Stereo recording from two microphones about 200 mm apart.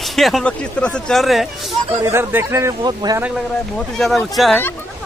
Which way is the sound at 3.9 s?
Centre (ahead or behind).